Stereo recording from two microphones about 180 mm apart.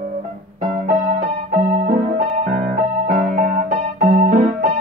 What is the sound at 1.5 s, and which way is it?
Keyboard, 50° right (ahead or behind).